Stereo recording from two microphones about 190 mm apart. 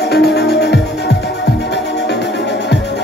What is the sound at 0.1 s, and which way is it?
Music, 60° left (ahead or behind).